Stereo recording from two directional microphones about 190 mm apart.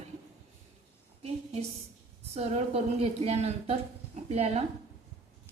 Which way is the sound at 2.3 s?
35° right (ahead or behind).